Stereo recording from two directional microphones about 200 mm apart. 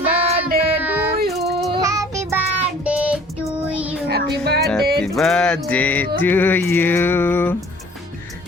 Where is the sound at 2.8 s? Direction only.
5° right (ahead or behind).